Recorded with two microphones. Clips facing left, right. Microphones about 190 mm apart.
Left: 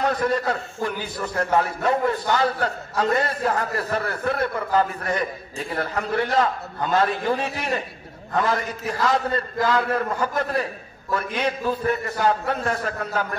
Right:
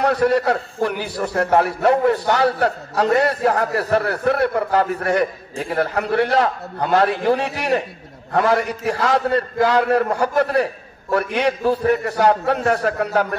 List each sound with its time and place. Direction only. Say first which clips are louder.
0.0 s a man's voice: right 5 dB; 70° right (ahead or behind)